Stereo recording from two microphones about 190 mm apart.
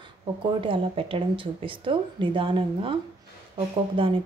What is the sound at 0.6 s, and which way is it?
A woman's voice, 25° right (ahead or behind).